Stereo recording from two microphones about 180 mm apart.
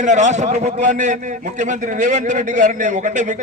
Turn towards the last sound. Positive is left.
turn(degrees=-45)  # may be behind; listen again after turning